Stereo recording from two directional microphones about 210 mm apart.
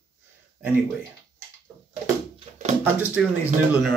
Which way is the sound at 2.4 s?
30° right (ahead or behind).